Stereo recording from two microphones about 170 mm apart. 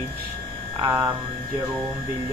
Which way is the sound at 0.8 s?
20° right (ahead or behind).